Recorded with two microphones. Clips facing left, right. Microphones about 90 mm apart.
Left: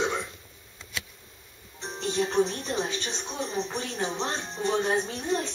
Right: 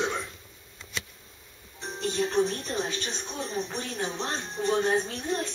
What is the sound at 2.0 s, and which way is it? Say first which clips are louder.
A woman's voice: left 1 dB; 20° left (ahead or behind).